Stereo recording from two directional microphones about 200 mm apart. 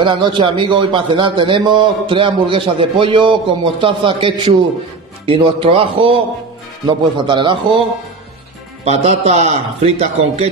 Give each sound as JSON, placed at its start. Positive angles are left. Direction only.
{"t": 0.0, "sound": "a man's voice", "side_deg": -25}
{"t": 8.8, "sound": "a man's voice", "side_deg": -30}